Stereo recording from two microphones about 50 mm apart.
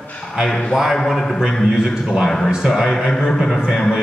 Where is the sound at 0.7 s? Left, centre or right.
Centre.